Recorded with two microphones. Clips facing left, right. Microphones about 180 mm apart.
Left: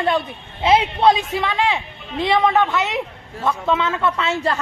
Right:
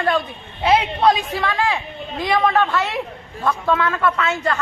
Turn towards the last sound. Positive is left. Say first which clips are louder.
# even
turn(degrees=30)  # may be behind; listen again after turning